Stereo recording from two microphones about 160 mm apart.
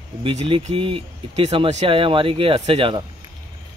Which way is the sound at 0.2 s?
35° right (ahead or behind).